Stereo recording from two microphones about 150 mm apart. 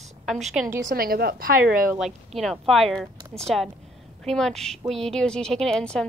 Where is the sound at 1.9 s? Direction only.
Centre (ahead or behind).